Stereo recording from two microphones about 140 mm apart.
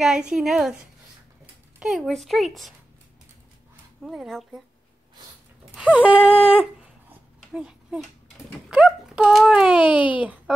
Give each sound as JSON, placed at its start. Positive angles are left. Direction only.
{"t": 0.0, "sound": "a woman's voice", "side_deg": -5}
{"t": 4.0, "sound": "a woman's voice", "side_deg": 0}
{"t": 5.8, "sound": "speech", "side_deg": -10}
{"t": 6.3, "sound": "a sound", "side_deg": 40}
{"t": 7.5, "sound": "a child's voice", "side_deg": -5}